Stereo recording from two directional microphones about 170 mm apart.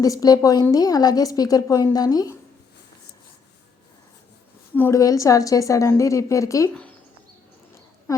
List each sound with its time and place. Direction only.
0.0 s a woman's voice: 20° left (ahead or behind)
4.7 s a woman's voice: 15° left (ahead or behind)